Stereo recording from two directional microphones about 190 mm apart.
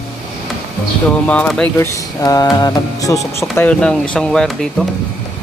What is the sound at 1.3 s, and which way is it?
Speech, 5° left (ahead or behind).